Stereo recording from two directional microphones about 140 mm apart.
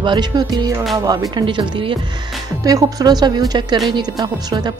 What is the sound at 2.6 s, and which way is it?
A woman's voice, 25° right (ahead or behind).